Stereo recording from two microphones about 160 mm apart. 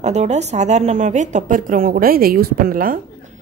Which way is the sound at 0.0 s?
45° right (ahead or behind).